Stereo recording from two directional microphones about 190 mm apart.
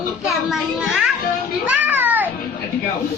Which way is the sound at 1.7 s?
10° right (ahead or behind).